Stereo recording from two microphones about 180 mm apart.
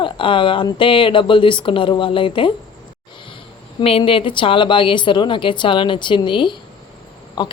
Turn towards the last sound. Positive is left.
turn(degrees=25)  # may be behind; listen again after turning